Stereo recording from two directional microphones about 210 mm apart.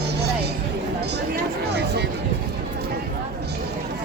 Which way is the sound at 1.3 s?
50° right (ahead or behind).